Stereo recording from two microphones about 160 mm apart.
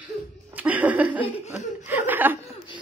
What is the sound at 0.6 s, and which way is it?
Laughter, 10° right (ahead or behind).